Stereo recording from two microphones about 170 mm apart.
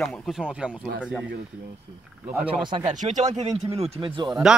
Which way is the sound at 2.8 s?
45° right (ahead or behind).